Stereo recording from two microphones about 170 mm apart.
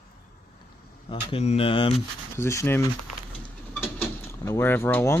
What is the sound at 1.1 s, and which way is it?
Speech, 35° left (ahead or behind).